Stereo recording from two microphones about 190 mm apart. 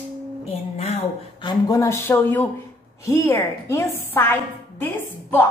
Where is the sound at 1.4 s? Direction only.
20° left (ahead or behind).